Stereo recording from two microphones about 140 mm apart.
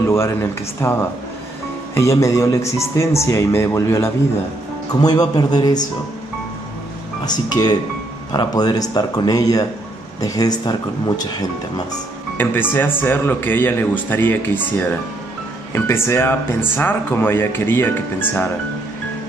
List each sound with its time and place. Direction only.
0.1 s speech: 20° left (ahead or behind)
7.2 s speech: 30° left (ahead or behind)
12.4 s speech: 15° left (ahead or behind)
15.7 s speech: 15° left (ahead or behind)